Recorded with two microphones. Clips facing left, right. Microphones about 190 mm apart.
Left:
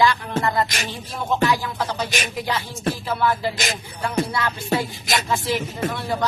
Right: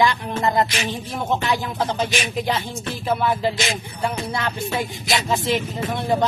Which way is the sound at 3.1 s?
20° right (ahead or behind).